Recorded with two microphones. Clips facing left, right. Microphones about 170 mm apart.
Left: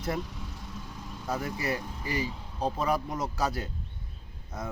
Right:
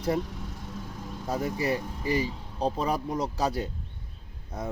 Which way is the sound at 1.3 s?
30° right (ahead or behind).